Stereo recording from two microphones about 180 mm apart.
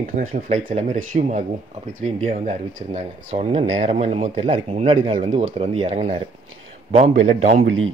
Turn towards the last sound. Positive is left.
turn(degrees=-40)  # may be behind; listen again after turning